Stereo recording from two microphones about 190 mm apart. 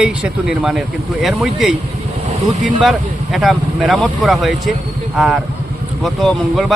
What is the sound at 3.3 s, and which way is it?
Speech, centre (ahead or behind).